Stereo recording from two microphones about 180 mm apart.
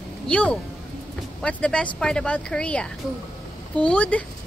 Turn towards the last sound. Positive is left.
turn(degrees=5)  # may be behind; listen again after turning